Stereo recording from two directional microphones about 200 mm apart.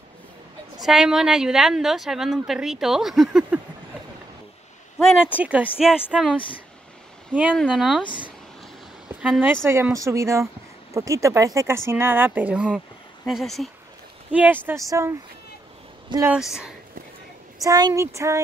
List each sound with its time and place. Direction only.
0.7 s a woman's voice: centre (ahead or behind)
4.9 s a woman's voice: centre (ahead or behind)
7.3 s a woman's voice: 5° right (ahead or behind)
9.2 s a woman's voice: 5° right (ahead or behind)
16.3 s a woman's voice: centre (ahead or behind)
17.6 s speech: 20° right (ahead or behind)